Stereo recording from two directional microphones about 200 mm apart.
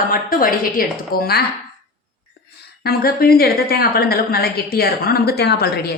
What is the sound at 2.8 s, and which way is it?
A woman's voice, 50° left (ahead or behind).